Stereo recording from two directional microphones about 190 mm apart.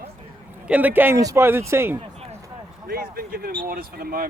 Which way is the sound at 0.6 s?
10° right (ahead or behind).